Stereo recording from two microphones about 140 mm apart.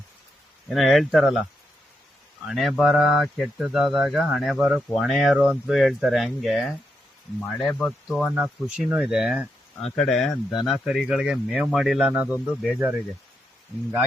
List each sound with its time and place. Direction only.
0.7 s speech: centre (ahead or behind)
2.5 s speech: centre (ahead or behind)
8.0 s speech: 5° right (ahead or behind)